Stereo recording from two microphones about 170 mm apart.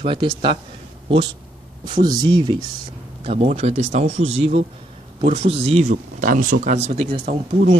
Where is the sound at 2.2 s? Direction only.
25° right (ahead or behind).